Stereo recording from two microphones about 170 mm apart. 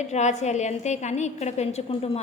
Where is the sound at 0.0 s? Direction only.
45° left (ahead or behind).